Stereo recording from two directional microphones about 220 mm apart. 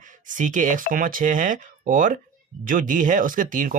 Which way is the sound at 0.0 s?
35° right (ahead or behind).